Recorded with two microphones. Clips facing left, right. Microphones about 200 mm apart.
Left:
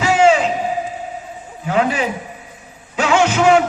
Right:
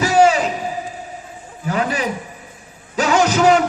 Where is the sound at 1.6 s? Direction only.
40° right (ahead or behind).